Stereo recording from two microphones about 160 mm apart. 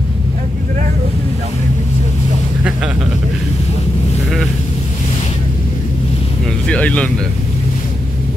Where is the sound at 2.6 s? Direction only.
5° right (ahead or behind).